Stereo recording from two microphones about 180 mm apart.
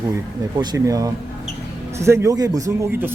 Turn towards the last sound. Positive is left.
turn(degrees=-15)  # may be behind; listen again after turning